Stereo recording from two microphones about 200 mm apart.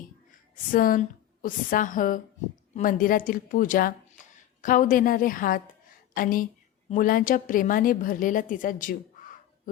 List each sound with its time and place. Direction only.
0.3 s a woman's voice: 45° left (ahead or behind)